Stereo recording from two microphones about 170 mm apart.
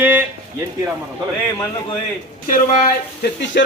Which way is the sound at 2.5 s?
65° left (ahead or behind).